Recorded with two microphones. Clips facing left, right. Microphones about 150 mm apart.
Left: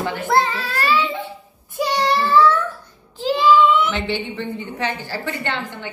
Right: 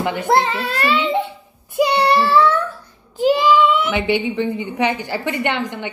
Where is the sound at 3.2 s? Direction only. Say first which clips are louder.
Right 1 dB; 15° right (ahead or behind).